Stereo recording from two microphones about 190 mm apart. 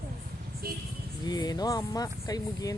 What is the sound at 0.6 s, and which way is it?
Speech, 50° right (ahead or behind).